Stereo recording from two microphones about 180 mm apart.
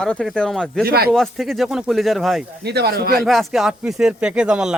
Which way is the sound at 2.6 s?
65° right (ahead or behind).